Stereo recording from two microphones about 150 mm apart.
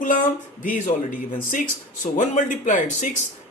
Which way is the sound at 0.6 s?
60° left (ahead or behind).